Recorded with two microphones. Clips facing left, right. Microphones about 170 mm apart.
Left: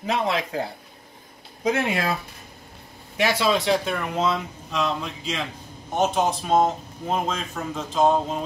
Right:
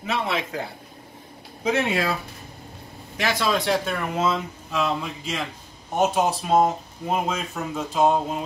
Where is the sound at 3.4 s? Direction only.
Centre (ahead or behind).